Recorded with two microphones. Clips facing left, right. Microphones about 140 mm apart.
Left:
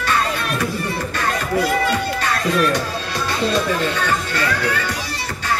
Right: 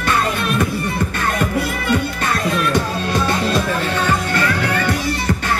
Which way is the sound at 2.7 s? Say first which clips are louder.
Right 4 dB; 50° right (ahead or behind).